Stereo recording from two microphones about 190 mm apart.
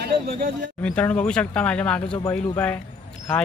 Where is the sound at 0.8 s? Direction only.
5° left (ahead or behind).